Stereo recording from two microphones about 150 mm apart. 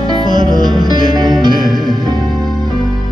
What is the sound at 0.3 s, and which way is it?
Music, 30° right (ahead or behind).